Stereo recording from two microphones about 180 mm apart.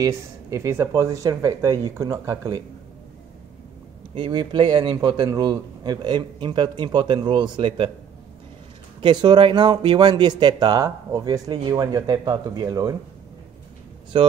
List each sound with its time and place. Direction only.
0.0 s speech: 15° right (ahead or behind)
4.1 s speech: 25° right (ahead or behind)
9.0 s speech: 25° right (ahead or behind)
14.1 s speech: 25° right (ahead or behind)